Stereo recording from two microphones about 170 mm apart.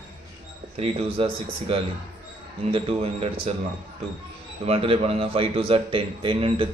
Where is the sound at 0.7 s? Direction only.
35° right (ahead or behind).